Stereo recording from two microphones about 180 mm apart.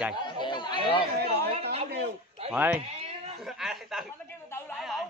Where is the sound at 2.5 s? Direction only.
10° right (ahead or behind).